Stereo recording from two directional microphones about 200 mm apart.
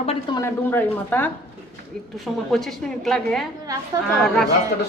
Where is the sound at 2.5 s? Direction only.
Centre (ahead or behind).